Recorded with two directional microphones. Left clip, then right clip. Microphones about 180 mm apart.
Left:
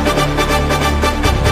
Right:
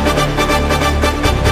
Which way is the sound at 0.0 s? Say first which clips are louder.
Even; centre (ahead or behind).